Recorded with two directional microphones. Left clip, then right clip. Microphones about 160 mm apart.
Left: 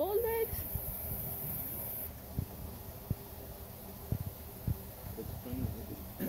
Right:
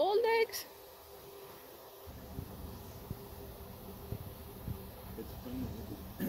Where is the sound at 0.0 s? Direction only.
20° right (ahead or behind).